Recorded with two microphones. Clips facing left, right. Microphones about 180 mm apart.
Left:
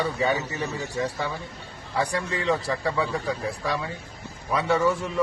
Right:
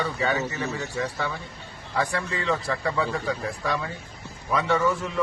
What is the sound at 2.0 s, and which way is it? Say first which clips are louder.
A man's voice: left 1 dB; 15° left (ahead or behind).